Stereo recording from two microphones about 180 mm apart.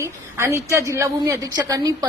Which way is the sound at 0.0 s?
15° right (ahead or behind).